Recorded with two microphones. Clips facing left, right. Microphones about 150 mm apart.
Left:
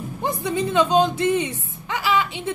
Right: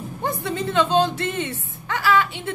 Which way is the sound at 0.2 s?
20° left (ahead or behind).